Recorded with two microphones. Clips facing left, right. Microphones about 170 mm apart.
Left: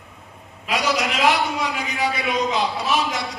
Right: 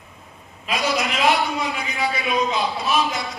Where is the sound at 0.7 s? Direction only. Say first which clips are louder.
Left 1 dB; 80° left.